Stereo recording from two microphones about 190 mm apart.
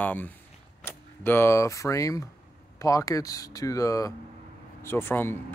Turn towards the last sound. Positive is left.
turn(degrees=10)  # may be behind; listen again after turning